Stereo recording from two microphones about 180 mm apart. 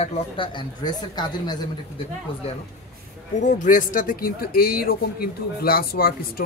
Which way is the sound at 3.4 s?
45° left (ahead or behind).